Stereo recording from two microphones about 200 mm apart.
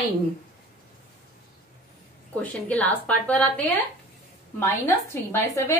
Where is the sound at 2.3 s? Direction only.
5° left (ahead or behind).